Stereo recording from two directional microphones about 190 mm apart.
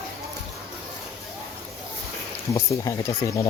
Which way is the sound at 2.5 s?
15° left (ahead or behind).